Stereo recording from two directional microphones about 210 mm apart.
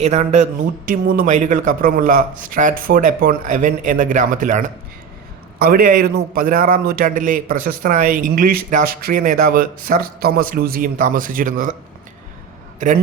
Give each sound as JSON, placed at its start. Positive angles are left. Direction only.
{"t": 0.0, "sound": "a man's voice", "side_deg": -30}